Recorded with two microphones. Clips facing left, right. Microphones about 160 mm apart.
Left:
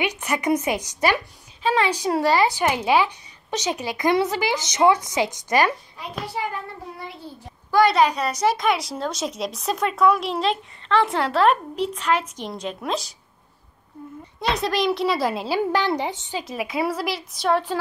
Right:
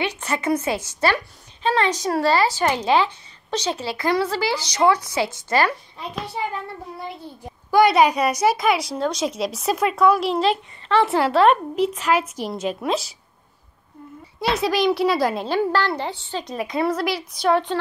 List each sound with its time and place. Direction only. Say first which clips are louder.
0.0 s a woman's voice: even; 15° left (ahead or behind)
7.7 s a woman's voice: right 2 dB; 15° right (ahead or behind)
14.4 s a woman's voice: right 2 dB; 5° right (ahead or behind); by 16.4 s 15° left (ahead or behind)
16.4 s a woman's voice: right 2 dB; 5° left (ahead or behind)